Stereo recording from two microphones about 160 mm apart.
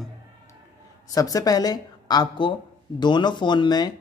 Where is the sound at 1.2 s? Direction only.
20° left (ahead or behind).